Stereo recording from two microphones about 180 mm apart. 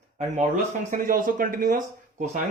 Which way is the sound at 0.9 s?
50° right (ahead or behind).